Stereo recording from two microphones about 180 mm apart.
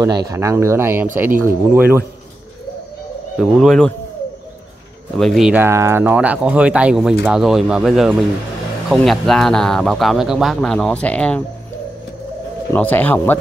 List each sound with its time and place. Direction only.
0.0 s speech: 20° right (ahead or behind)
3.3 s speech: centre (ahead or behind)
5.1 s speech: centre (ahead or behind)
12.7 s speech: 10° left (ahead or behind)